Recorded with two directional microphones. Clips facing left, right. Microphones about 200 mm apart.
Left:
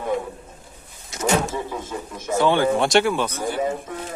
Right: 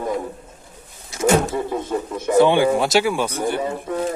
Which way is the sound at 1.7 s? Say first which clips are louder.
Right 7 dB; 60° right (ahead or behind).